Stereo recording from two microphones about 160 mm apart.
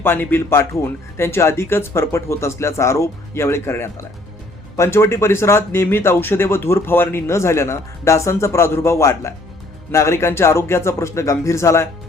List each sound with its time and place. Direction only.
0.0 s speech: 15° left (ahead or behind)